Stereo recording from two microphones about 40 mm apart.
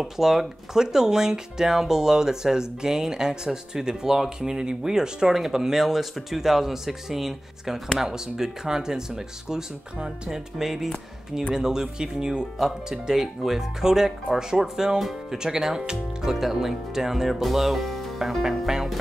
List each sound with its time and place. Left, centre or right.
0.0 s speech: centre